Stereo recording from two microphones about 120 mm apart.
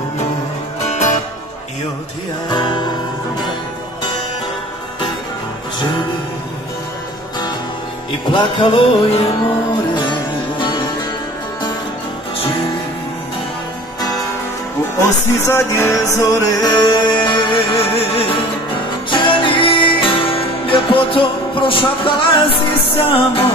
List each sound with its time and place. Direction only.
2.5 s music: 40° left (ahead or behind)
8.3 s music: 40° left (ahead or behind)
10.6 s music: 40° left (ahead or behind)
15.0 s music: 20° left (ahead or behind); by 23.5 s 50° left (ahead or behind)